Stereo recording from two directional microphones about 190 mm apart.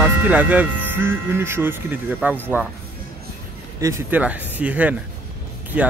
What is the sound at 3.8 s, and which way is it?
Speech, 15° right (ahead or behind).